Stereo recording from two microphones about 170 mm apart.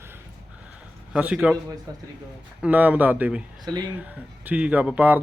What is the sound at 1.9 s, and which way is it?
Speech, 20° right (ahead or behind).